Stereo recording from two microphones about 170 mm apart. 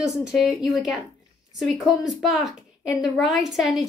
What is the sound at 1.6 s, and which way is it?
A woman's voice, centre (ahead or behind).